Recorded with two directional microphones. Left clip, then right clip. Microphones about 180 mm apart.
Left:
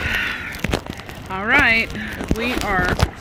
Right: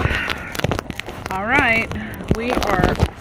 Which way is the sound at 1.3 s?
5° left (ahead or behind).